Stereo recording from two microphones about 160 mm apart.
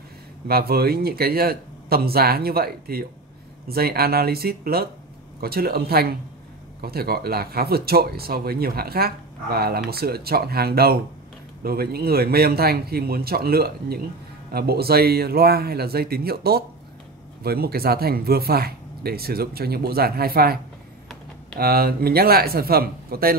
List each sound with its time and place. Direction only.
0.5 s speech: 75° right (ahead or behind)
21.5 s speech: 70° right (ahead or behind)